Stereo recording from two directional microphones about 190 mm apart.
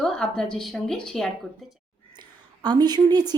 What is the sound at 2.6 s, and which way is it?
Speech, 20° right (ahead or behind).